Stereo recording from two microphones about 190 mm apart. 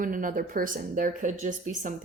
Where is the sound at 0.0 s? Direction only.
45° right (ahead or behind).